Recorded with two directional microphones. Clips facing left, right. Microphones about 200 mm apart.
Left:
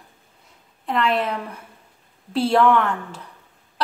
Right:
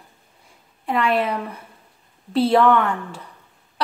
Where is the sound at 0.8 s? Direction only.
5° right (ahead or behind).